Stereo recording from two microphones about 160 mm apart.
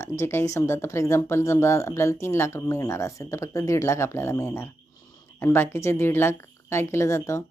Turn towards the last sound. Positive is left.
turn(degrees=20)  # may be behind; listen again after turning